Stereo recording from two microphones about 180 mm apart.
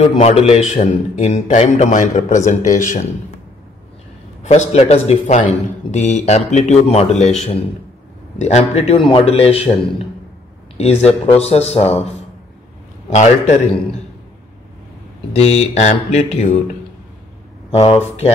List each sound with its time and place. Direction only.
0.2 s a man's voice: 35° left (ahead or behind)
4.4 s a man's voice: 40° left (ahead or behind)
8.4 s a man's voice: 40° left (ahead or behind)
10.8 s a man's voice: 35° left (ahead or behind)
13.1 s a man's voice: 40° left (ahead or behind)
15.3 s a man's voice: 35° left (ahead or behind)
17.6 s a man's voice: 30° left (ahead or behind)